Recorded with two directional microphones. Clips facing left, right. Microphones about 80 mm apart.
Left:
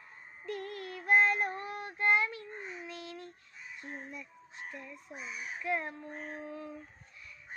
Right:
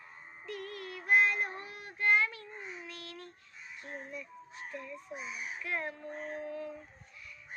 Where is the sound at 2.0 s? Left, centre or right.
Left.